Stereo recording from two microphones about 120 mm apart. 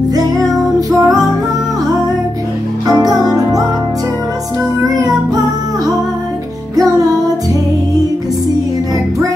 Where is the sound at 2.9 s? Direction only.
30° right (ahead or behind).